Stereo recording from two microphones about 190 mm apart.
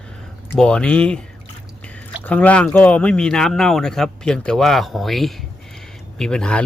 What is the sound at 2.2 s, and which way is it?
Speech, 10° left (ahead or behind).